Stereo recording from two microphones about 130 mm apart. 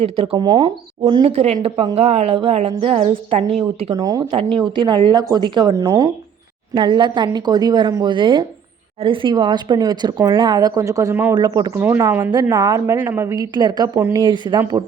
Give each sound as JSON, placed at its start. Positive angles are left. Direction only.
{"t": 0.0, "sound": "a woman's voice", "side_deg": -45}
{"t": 0.3, "sound": "a woman's voice", "side_deg": -30}
{"t": 1.2, "sound": "a woman's voice", "side_deg": -50}
{"t": 3.9, "sound": "a woman's voice", "side_deg": -30}
{"t": 4.4, "sound": "a woman's voice", "side_deg": -40}
{"t": 6.7, "sound": "a woman's voice", "side_deg": -35}
{"t": 11.3, "sound": "a woman's voice", "side_deg": -30}
{"t": 12.3, "sound": "a woman's voice", "side_deg": -30}